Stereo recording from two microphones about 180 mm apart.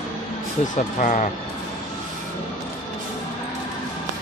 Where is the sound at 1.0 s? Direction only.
45° left (ahead or behind).